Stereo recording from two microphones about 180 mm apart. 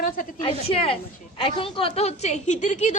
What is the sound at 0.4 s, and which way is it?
A woman's voice, 30° left (ahead or behind).